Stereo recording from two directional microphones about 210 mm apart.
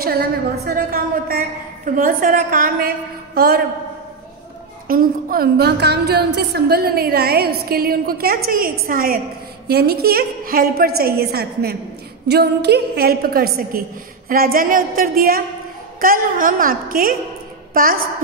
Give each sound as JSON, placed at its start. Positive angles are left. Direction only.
{"t": 0.7, "sound": "a woman's voice", "side_deg": -45}
{"t": 4.8, "sound": "a woman's voice", "side_deg": -45}